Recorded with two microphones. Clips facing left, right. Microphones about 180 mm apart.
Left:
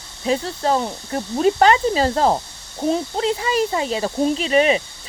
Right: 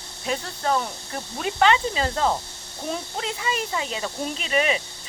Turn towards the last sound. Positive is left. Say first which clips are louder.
# left 7 dB
turn(degrees=35)  # may be behind; listen again after turning